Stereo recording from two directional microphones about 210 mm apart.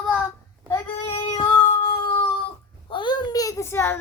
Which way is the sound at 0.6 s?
10° left (ahead or behind).